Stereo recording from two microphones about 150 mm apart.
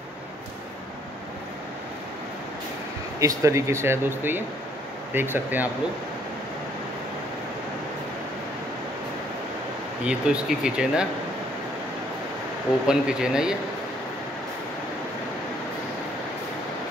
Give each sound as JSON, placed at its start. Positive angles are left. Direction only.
{"t": 3.2, "sound": "speech", "side_deg": -20}
{"t": 10.0, "sound": "speech", "side_deg": -5}
{"t": 12.8, "sound": "speech", "side_deg": -5}